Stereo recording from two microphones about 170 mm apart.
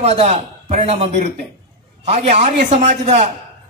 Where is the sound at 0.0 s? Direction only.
40° right (ahead or behind).